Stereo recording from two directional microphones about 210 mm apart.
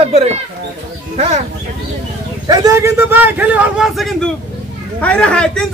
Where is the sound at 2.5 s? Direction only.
15° right (ahead or behind).